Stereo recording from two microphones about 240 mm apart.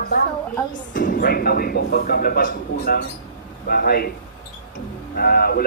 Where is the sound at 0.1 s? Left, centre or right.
Left.